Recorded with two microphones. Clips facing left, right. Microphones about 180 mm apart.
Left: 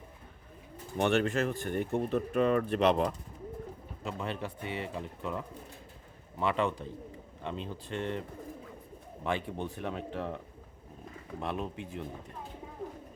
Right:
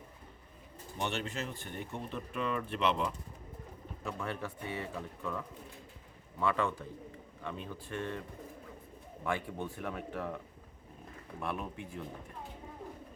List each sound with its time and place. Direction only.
0.9 s speech: 55° left (ahead or behind)
4.0 s speech: 20° left (ahead or behind)
9.2 s speech: 25° left (ahead or behind)
11.3 s speech: 25° left (ahead or behind)